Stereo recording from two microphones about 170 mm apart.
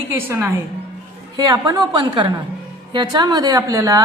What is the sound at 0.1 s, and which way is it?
A woman's voice, 15° right (ahead or behind).